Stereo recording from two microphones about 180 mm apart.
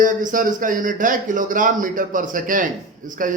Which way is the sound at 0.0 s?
45° right (ahead or behind).